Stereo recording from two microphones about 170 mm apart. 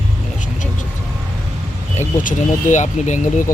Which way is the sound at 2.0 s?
45° left (ahead or behind).